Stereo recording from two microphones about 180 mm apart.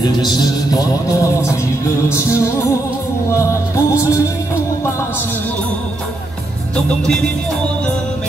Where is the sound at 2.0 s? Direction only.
15° left (ahead or behind).